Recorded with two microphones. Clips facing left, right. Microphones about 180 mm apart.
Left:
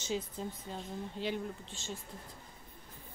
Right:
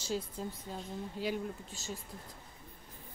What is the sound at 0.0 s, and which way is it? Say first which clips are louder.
Speech: even; 5° right (ahead or behind).